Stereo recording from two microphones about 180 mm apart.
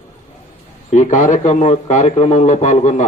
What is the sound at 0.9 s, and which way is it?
A man's voice, 45° left (ahead or behind).